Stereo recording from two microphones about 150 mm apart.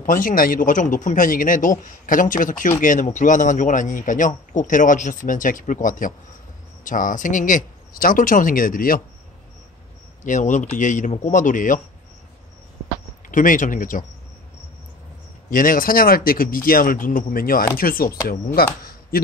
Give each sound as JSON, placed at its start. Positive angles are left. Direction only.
{"t": 0.0, "sound": "a man's voice", "side_deg": 65}
{"t": 10.2, "sound": "a man's voice", "side_deg": 55}
{"t": 13.3, "sound": "a man's voice", "side_deg": 65}
{"t": 15.5, "sound": "speech", "side_deg": 65}